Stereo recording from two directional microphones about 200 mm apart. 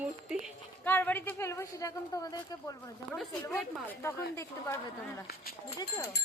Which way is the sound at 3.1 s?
5° left (ahead or behind).